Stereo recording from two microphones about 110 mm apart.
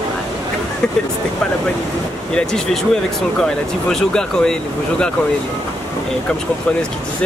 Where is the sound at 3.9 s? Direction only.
5° left (ahead or behind).